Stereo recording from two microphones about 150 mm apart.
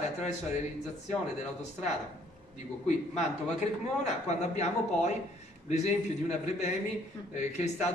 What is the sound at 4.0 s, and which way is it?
A man's voice, 50° left (ahead or behind).